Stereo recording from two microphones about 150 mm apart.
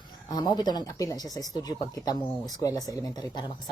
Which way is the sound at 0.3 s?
25° left (ahead or behind).